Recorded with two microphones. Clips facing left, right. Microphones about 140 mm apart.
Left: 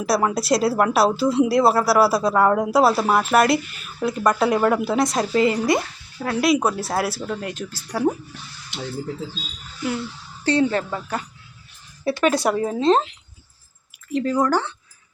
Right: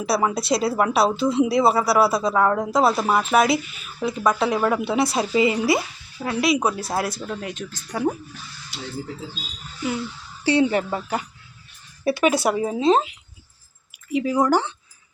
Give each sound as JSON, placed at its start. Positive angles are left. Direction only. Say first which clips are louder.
{"t": 0.0, "sound": "speech", "louder": "left 1 dB", "side_deg": 0}
{"t": 10.4, "sound": "speech", "louder": "right 1 dB", "side_deg": -15}